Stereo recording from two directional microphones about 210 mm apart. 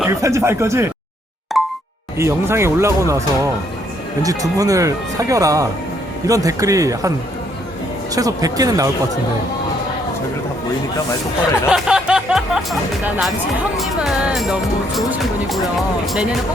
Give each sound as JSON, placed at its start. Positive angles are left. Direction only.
{"t": 0.0, "sound": "speech", "side_deg": -15}
{"t": 1.5, "sound": "plop", "side_deg": 0}
{"t": 2.1, "sound": "speech", "side_deg": -15}
{"t": 8.1, "sound": "speech", "side_deg": -15}
{"t": 11.7, "sound": "music", "side_deg": -5}